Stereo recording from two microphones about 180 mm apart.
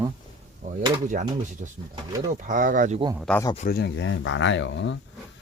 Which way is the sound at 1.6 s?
45° right (ahead or behind).